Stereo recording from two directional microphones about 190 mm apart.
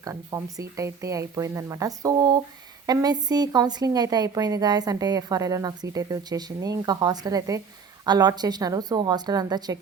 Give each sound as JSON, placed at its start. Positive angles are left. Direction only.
{"t": 0.0, "sound": "a woman's voice", "side_deg": -15}